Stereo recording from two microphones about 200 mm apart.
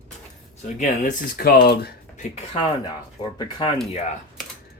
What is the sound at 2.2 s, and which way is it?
Speech, 30° left (ahead or behind).